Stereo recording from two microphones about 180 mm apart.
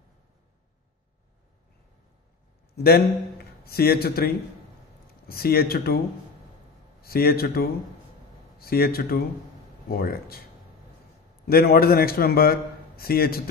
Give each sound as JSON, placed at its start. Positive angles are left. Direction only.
{"t": 2.7, "sound": "a man's voice", "side_deg": 60}
{"t": 7.0, "sound": "a man's voice", "side_deg": 55}